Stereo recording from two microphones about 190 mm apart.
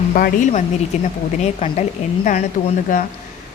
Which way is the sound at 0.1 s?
45° left (ahead or behind).